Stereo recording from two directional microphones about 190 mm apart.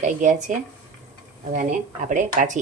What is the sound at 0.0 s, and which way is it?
Speech, 40° right (ahead or behind).